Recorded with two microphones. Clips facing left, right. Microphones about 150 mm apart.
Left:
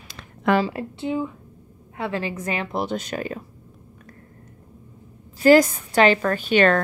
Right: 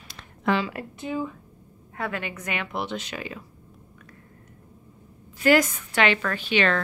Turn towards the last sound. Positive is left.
turn(degrees=45)  # may be behind; listen again after turning